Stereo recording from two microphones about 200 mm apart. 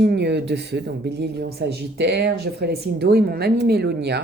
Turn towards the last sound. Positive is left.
turn(degrees=-55)  # may be behind; listen again after turning